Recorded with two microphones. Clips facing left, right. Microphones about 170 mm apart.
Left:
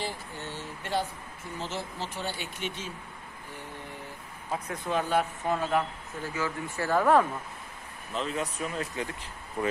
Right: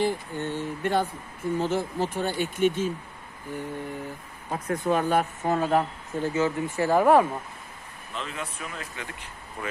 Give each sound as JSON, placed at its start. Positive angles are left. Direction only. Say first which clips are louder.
{"t": 0.0, "sound": "speech", "louder": "right 9 dB", "side_deg": -55}
{"t": 4.5, "sound": "speech", "louder": "right 6 dB", "side_deg": -50}
{"t": 6.2, "sound": "speech", "louder": "right 7 dB", "side_deg": -25}
{"t": 8.1, "sound": "speech", "louder": "left 4 dB", "side_deg": 35}